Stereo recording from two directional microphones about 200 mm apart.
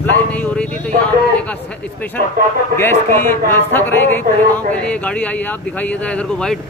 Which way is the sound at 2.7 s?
10° left (ahead or behind).